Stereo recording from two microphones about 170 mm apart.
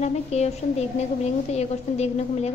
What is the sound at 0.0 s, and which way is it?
A woman's voice, 40° left (ahead or behind).